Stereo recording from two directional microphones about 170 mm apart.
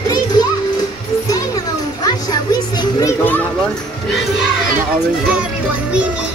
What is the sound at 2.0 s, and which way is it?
Music, 25° left (ahead or behind).